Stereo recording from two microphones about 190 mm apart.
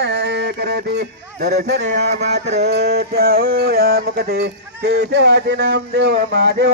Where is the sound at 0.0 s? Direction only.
60° right (ahead or behind).